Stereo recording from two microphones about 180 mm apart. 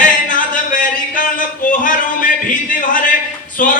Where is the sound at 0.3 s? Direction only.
50° left (ahead or behind).